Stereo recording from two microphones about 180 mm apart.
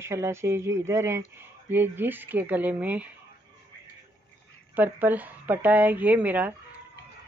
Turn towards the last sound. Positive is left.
turn(degrees=-10)  # may be behind; listen again after turning